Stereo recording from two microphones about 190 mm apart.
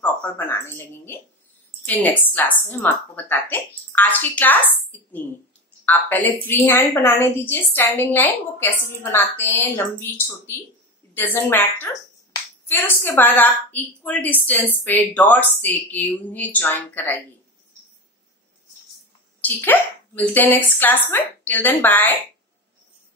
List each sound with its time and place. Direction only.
0.0 s speech: 10° left (ahead or behind)
2.1 s a woman's voice: 10° left (ahead or behind)
19.4 s a woman's voice: 10° left (ahead or behind)